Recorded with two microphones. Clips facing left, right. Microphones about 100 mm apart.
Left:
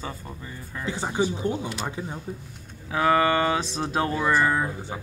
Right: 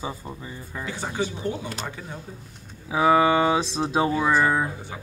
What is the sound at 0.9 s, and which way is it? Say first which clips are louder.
Speech: left 3 dB; 25° left (ahead or behind).